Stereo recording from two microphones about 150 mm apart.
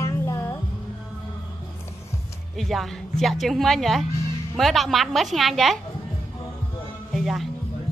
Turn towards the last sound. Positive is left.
turn(degrees=0)  # may be behind; listen again after turning